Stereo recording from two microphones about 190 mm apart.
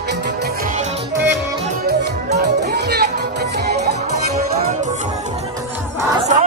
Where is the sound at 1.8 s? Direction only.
60° right (ahead or behind).